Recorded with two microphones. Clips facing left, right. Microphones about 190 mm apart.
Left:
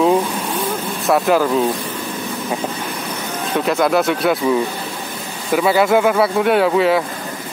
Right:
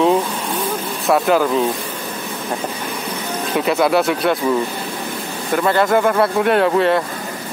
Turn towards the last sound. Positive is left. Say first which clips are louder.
# even
turn(degrees=0)  # may be behind; listen again after turning